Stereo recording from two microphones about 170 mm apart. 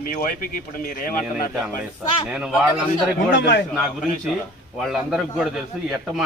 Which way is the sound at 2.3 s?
5° right (ahead or behind).